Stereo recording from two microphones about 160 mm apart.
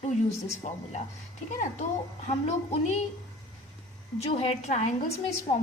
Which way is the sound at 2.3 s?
45° left (ahead or behind).